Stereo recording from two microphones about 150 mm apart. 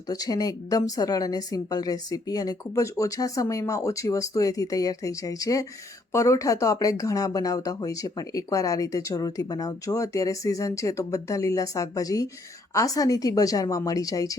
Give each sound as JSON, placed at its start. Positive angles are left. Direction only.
{"t": 0.1, "sound": "speech", "side_deg": 25}